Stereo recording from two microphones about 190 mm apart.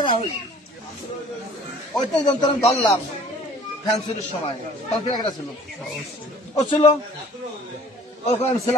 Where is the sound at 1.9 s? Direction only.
25° left (ahead or behind).